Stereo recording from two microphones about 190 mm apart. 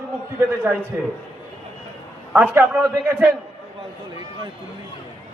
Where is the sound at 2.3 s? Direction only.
10° right (ahead or behind).